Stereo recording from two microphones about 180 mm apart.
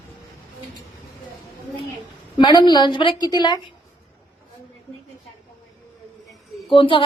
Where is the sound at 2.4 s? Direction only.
25° left (ahead or behind).